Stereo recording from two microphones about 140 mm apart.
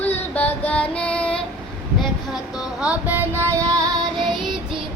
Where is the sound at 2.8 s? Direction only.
15° right (ahead or behind).